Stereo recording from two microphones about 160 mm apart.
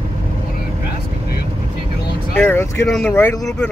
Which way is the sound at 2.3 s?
15° left (ahead or behind).